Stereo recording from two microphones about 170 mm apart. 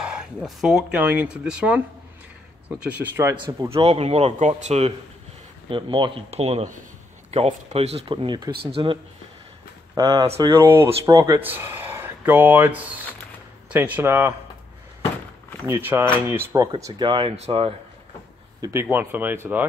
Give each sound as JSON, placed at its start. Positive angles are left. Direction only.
{"t": 0.0, "sound": "a sound", "side_deg": -5}
{"t": 0.9, "sound": "speech", "side_deg": -10}
{"t": 2.8, "sound": "speech", "side_deg": -10}
{"t": 3.3, "sound": "speech", "side_deg": -25}
{"t": 9.9, "sound": "speech", "side_deg": -25}
{"t": 15.6, "sound": "speech", "side_deg": -15}
{"t": 16.7, "sound": "speech", "side_deg": -25}
{"t": 18.6, "sound": "speech", "side_deg": -15}